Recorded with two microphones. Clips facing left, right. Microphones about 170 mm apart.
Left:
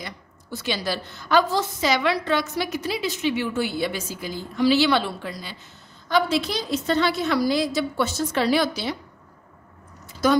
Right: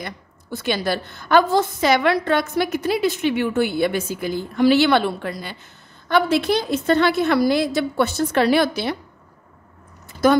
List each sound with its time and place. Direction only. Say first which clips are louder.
0.0 s a woman's voice: right 4 dB; 55° right (ahead or behind)
10.2 s a woman's voice: right 4 dB; 55° right (ahead or behind)